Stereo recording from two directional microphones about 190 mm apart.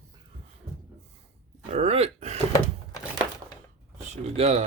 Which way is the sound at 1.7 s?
35° right (ahead or behind).